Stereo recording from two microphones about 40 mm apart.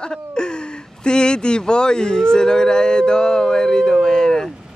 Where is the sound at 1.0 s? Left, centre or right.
Left.